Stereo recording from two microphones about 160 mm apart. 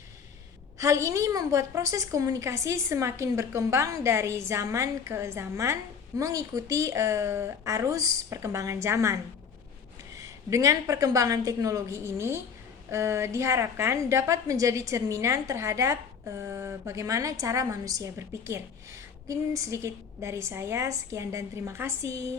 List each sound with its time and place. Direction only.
0.8 s a woman's voice: 20° right (ahead or behind)